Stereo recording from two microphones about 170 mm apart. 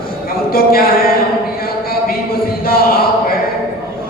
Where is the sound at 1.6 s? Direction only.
60° left (ahead or behind).